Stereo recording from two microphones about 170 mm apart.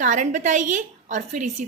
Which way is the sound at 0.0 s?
50° right (ahead or behind).